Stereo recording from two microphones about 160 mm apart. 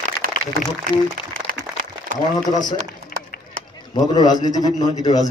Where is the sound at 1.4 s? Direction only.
55° right (ahead or behind).